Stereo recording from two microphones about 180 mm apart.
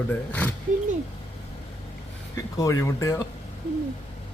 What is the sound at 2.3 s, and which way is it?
Speech, 20° left (ahead or behind).